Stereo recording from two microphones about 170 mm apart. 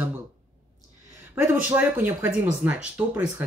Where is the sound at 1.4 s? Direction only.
10° right (ahead or behind).